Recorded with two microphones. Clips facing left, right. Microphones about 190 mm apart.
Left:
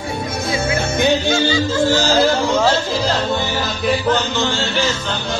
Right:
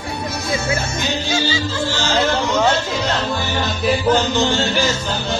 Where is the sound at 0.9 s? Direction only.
55° left (ahead or behind); by 3.2 s 30° left (ahead or behind).